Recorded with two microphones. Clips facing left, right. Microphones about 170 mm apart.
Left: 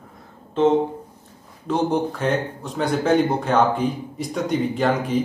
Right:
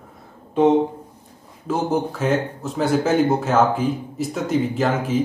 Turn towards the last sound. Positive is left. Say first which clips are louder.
# even
turn(degrees=0)  # may be behind; listen again after turning